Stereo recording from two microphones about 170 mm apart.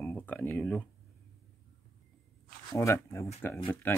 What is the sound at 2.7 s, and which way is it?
Speech, 15° left (ahead or behind).